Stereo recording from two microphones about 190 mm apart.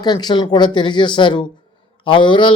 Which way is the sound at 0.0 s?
20° left (ahead or behind).